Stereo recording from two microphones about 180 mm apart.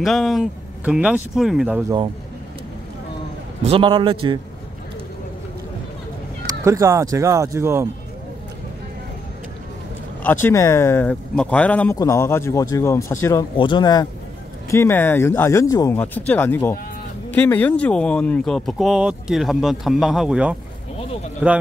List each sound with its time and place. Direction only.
0.0 s speech: centre (ahead or behind)
3.6 s a man's voice: 30° right (ahead or behind)
6.6 s speech: 15° right (ahead or behind)
10.2 s speech: 15° left (ahead or behind)
14.7 s speech: 15° left (ahead or behind); by 20.5 s 5° right (ahead or behind)